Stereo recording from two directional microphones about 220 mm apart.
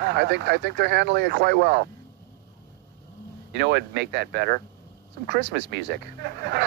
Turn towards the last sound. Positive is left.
turn(degrees=-45)  # may be behind; listen again after turning